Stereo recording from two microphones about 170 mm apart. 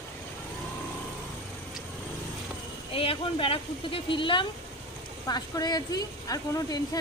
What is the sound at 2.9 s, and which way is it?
A woman's voice, 35° left (ahead or behind).